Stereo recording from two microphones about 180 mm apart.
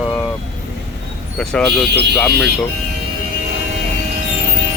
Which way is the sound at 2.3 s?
65° right (ahead or behind).